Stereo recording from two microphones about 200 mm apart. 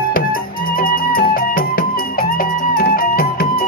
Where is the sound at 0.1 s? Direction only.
45° left (ahead or behind).